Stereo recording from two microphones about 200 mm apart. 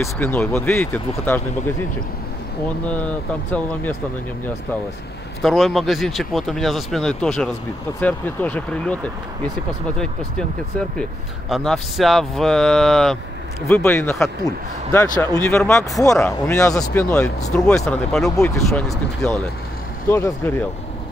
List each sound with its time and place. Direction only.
0.0 s speech: 10° left (ahead or behind)
5.4 s speech: centre (ahead or behind)
11.0 s speech: centre (ahead or behind)
13.7 s speech: 15° left (ahead or behind)
17.5 s speech: centre (ahead or behind)
20.1 s speech: 15° left (ahead or behind)